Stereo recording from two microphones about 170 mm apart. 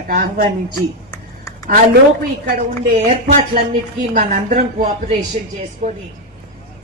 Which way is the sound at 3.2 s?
45° right (ahead or behind).